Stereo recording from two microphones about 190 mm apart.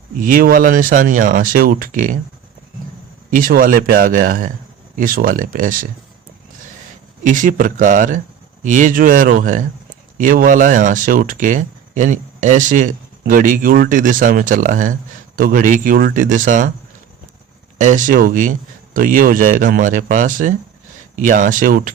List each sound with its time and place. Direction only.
0.2 s speech: 45° right (ahead or behind)
3.2 s speech: 45° right (ahead or behind)
7.3 s speech: 45° right (ahead or behind)
17.7 s speech: 40° right (ahead or behind)